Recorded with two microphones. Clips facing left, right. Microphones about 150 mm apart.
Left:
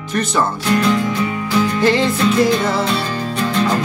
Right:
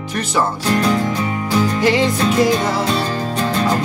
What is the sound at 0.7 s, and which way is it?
Music, 40° right (ahead or behind).